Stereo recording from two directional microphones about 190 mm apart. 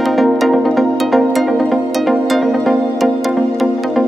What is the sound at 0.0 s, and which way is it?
Music, centre (ahead or behind).